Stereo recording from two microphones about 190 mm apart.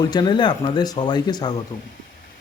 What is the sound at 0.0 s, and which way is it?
Speech, 20° left (ahead or behind).